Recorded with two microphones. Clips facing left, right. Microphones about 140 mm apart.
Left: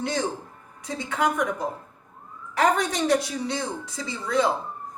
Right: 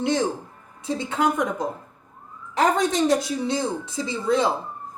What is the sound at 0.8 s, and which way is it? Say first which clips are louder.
Speech: right 2 dB; 25° right (ahead or behind).